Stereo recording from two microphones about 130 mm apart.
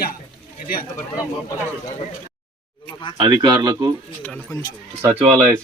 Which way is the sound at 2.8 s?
40° left (ahead or behind).